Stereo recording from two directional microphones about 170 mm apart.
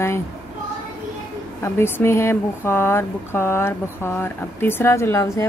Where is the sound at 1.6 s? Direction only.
15° left (ahead or behind).